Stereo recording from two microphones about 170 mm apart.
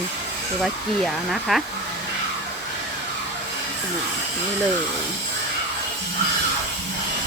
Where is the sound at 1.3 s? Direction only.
Centre (ahead or behind).